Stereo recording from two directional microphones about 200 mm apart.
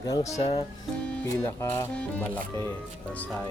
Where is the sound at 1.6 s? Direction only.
10° left (ahead or behind).